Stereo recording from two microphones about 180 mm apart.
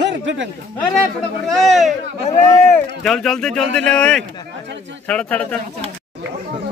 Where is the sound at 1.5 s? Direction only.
Centre (ahead or behind).